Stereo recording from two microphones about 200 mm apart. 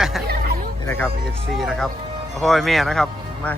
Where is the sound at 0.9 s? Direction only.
10° left (ahead or behind).